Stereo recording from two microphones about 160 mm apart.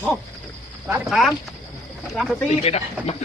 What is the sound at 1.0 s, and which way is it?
Speech, centre (ahead or behind).